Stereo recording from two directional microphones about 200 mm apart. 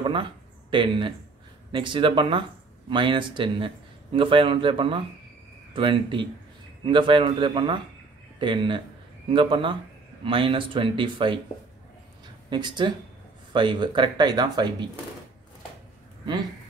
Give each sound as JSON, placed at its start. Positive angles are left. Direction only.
{"t": 0.0, "sound": "a sound", "side_deg": -25}
{"t": 1.7, "sound": "speech", "side_deg": -25}
{"t": 12.4, "sound": "speech", "side_deg": -20}